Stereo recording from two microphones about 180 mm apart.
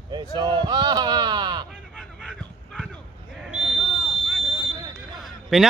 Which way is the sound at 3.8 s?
30° left (ahead or behind).